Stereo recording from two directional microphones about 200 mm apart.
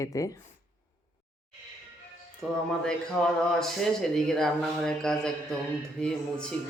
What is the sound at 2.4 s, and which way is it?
A man's voice, 5° left (ahead or behind).